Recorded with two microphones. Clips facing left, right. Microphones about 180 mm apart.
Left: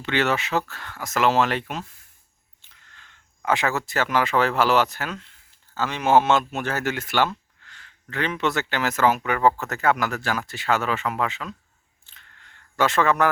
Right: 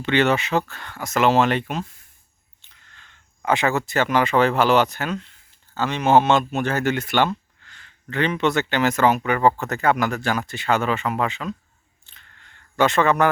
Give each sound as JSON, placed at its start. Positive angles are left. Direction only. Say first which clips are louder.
{"t": 0.0, "sound": "speech", "louder": "right 4 dB", "side_deg": 0}
{"t": 3.0, "sound": "speech", "louder": "right 2 dB", "side_deg": 0}
{"t": 7.6, "sound": "a sound", "louder": "even", "side_deg": 5}
{"t": 8.1, "sound": "speech", "louder": "right 4 dB", "side_deg": 0}
{"t": 12.7, "sound": "speech", "louder": "right 2 dB", "side_deg": 0}